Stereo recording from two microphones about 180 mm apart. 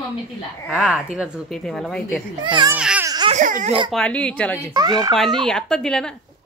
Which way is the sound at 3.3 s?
45° right (ahead or behind).